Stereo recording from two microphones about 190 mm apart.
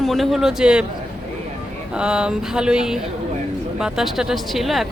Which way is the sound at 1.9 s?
5° right (ahead or behind).